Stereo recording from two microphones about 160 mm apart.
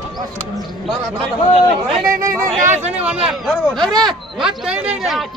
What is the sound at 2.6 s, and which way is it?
Speech, 45° right (ahead or behind).